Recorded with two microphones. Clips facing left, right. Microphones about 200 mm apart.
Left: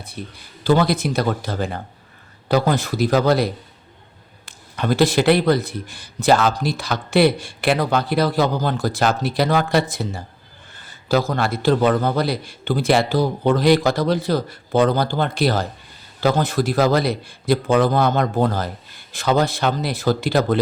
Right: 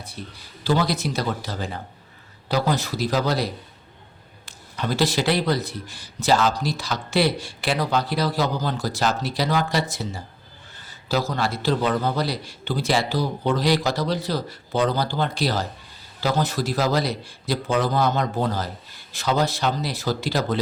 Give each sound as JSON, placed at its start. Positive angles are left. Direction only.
{"t": 0.2, "sound": "a man's voice", "side_deg": 55}